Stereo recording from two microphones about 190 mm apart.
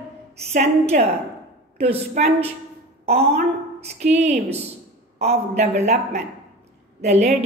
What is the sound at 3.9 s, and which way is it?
A woman's voice, 35° right (ahead or behind).